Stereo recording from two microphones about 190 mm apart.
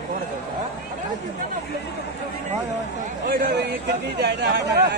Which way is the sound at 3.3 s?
55° right (ahead or behind).